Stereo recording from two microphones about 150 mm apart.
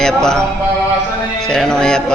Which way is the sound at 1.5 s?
5° left (ahead or behind).